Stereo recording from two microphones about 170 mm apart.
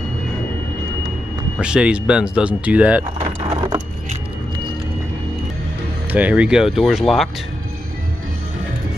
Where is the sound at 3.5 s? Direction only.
30° right (ahead or behind).